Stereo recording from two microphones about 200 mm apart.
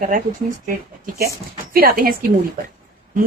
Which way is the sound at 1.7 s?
45° right (ahead or behind).